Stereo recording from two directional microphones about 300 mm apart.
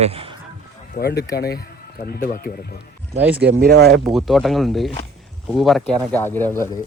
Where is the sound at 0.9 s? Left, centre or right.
Left.